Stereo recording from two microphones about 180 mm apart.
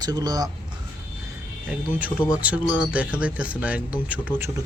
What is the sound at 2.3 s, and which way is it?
Speech, 10° right (ahead or behind).